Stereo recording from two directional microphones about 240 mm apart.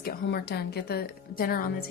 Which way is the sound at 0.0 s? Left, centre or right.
Left.